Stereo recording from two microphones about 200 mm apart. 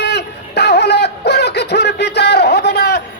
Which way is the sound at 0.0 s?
55° left (ahead or behind).